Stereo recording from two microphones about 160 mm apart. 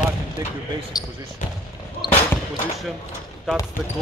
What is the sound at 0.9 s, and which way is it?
Speech, 25° left (ahead or behind).